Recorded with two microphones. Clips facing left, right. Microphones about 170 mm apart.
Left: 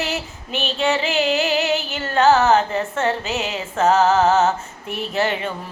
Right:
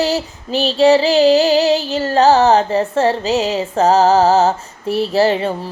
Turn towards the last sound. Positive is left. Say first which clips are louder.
# right 7 dB
turn(degrees=-35)  # may be behind; listen again after turning